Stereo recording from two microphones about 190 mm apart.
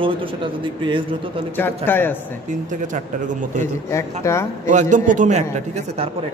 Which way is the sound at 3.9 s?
15° left (ahead or behind).